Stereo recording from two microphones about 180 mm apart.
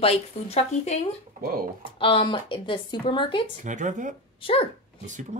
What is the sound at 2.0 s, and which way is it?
A woman's voice, 25° left (ahead or behind).